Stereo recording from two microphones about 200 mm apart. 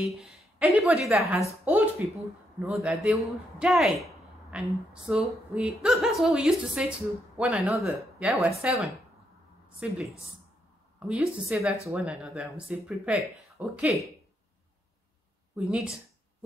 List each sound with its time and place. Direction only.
0.0 s a man's voice: centre (ahead or behind)
15.5 s a man's voice: 5° right (ahead or behind)